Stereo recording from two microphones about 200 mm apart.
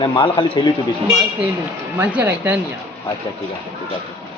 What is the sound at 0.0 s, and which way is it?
Speech, 25° left (ahead or behind).